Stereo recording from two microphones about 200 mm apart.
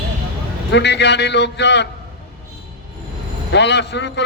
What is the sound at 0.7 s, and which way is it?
A man's voice, 60° left (ahead or behind).